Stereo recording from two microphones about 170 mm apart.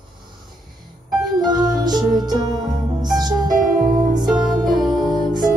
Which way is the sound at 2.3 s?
25° right (ahead or behind).